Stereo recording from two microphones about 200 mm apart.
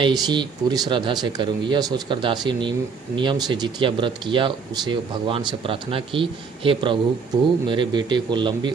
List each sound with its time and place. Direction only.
0.0 s speech: 20° right (ahead or behind)